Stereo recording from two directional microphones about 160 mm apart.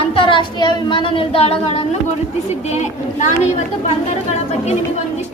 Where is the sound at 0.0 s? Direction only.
35° left (ahead or behind).